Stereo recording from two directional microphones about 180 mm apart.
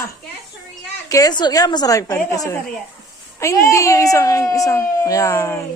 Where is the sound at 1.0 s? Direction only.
20° left (ahead or behind).